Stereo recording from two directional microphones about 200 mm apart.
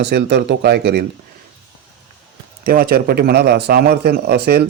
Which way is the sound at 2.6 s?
45° right (ahead or behind).